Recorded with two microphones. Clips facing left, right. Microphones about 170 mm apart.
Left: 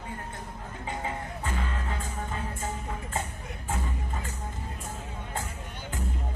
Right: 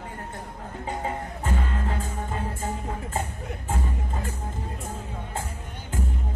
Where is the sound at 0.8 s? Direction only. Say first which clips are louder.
Right 4 dB; 40° right (ahead or behind).